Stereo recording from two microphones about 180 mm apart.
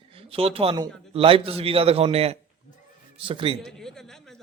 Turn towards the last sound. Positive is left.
turn(degrees=0)  # may be behind; listen again after turning